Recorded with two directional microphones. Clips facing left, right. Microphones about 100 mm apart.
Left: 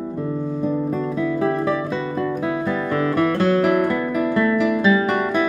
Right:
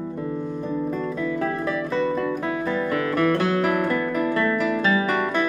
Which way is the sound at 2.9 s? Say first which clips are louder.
Left 2 dB; 25° left (ahead or behind).